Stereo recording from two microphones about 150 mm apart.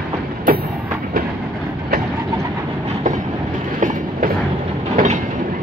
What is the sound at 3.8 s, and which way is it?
Train, 65° right (ahead or behind).